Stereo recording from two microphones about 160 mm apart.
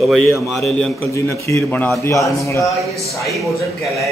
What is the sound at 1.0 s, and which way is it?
Speech, 20° left (ahead or behind).